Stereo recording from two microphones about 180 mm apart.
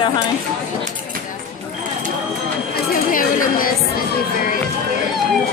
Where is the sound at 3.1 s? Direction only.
50° left (ahead or behind).